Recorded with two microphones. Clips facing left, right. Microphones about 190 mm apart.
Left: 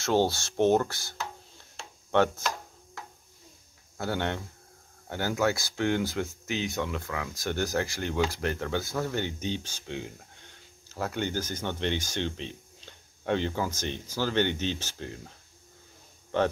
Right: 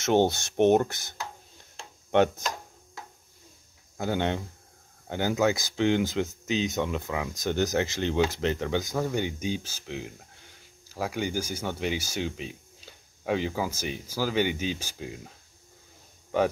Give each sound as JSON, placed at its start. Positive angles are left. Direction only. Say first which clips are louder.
{"t": 0.0, "sound": "speech", "louder": "right 2 dB", "side_deg": -20}
{"t": 2.0, "sound": "chopping", "louder": "right 2 dB", "side_deg": -20}
{"t": 4.0, "sound": "speech", "louder": "right 3 dB", "side_deg": -15}